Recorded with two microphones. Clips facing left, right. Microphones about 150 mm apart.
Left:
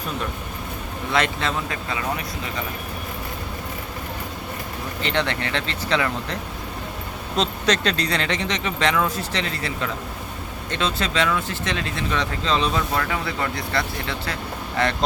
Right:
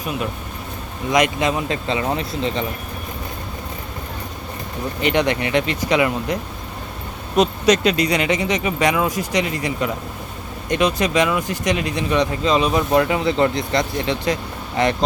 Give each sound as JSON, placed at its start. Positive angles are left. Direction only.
{"t": 1.1, "sound": "speech", "side_deg": -15}
{"t": 5.0, "sound": "speech", "side_deg": -15}